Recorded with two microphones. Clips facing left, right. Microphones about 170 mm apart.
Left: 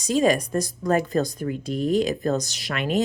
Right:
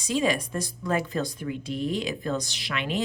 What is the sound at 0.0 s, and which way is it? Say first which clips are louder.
Speech: left 5 dB; 45° left (ahead or behind).